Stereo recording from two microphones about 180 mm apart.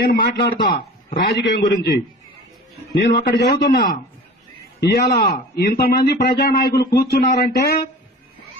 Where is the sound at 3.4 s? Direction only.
55° left (ahead or behind).